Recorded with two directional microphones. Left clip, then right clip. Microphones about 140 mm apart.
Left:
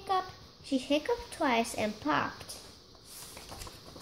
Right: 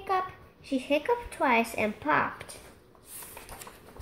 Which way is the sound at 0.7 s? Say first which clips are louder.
Right 3 dB; 20° right (ahead or behind).